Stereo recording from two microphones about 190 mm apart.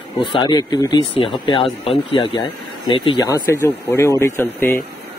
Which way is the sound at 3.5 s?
15° left (ahead or behind).